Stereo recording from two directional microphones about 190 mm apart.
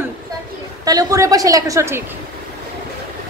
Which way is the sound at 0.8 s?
15° right (ahead or behind).